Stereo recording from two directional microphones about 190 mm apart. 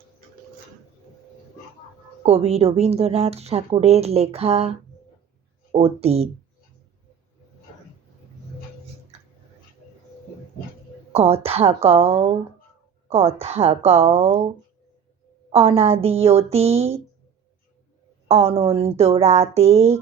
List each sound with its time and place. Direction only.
2.2 s speech: 35° right (ahead or behind)
5.7 s speech: 30° right (ahead or behind)
11.1 s speech: 30° right (ahead or behind)
15.5 s speech: 30° right (ahead or behind)
18.3 s speech: 30° right (ahead or behind)